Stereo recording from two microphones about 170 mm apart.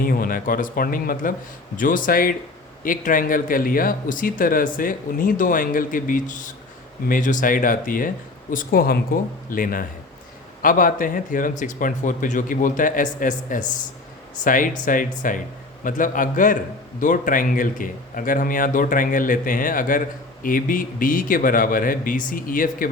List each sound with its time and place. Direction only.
0.0 s speech: 55° left (ahead or behind)